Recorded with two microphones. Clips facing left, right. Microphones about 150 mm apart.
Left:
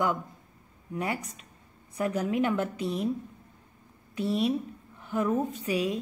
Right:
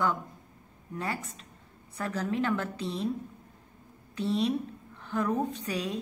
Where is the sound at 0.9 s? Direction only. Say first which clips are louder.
Left 3 dB; 15° left (ahead or behind).